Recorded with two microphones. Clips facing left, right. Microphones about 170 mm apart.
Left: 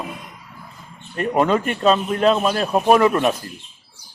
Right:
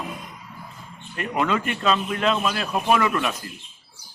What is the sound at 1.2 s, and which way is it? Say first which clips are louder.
A man's voice: left 6 dB; 40° left (ahead or behind).